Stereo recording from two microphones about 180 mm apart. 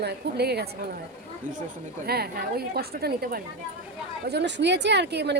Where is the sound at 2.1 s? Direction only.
60° right (ahead or behind).